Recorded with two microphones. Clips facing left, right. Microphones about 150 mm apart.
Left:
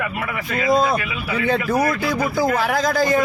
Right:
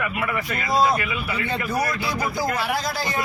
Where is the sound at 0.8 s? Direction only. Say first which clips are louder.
Left 1 dB; 55° left (ahead or behind).